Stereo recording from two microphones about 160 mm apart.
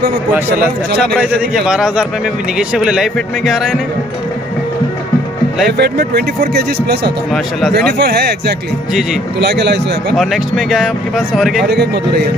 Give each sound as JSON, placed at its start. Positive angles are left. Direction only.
{"t": 1.5, "sound": "speech", "side_deg": -5}
{"t": 5.7, "sound": "speech", "side_deg": -90}
{"t": 8.0, "sound": "speech", "side_deg": -85}
{"t": 10.1, "sound": "speech", "side_deg": 0}
{"t": 11.6, "sound": "speech", "side_deg": -90}